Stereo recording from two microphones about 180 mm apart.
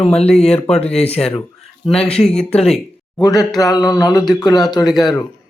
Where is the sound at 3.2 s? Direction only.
20° left (ahead or behind).